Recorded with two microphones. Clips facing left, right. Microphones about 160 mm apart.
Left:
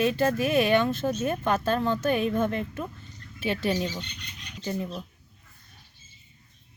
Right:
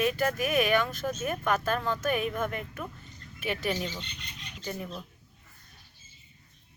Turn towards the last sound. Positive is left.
turn(degrees=25)  # may be behind; listen again after turning